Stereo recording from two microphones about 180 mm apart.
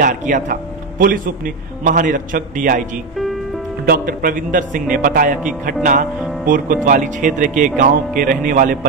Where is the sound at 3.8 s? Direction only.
50° right (ahead or behind).